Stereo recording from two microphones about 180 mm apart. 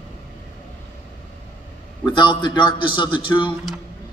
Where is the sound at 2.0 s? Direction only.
25° left (ahead or behind).